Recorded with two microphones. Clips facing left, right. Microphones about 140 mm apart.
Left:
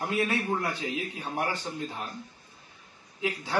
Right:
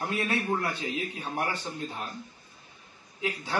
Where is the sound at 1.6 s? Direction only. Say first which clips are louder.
Left 1 dB; 5° right (ahead or behind).